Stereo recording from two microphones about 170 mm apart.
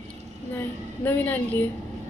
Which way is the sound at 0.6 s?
10° left (ahead or behind).